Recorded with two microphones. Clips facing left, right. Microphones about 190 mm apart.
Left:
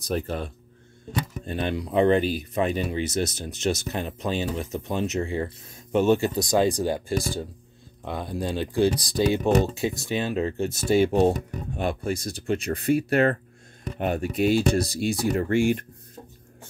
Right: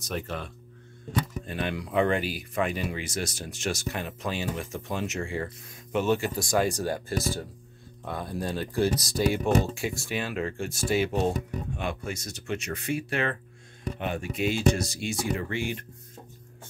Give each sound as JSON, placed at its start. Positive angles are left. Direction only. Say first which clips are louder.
{"t": 0.0, "sound": "speech", "louder": "left 6 dB", "side_deg": 35}